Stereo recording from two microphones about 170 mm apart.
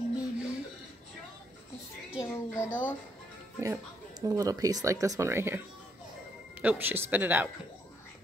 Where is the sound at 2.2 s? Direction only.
15° left (ahead or behind).